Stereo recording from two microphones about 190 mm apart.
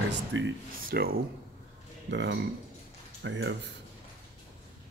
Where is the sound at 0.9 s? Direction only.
50° right (ahead or behind).